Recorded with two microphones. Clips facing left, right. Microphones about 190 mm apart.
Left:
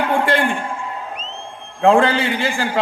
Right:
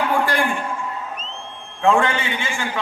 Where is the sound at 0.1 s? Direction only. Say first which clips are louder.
Left 3 dB; 25° left (ahead or behind).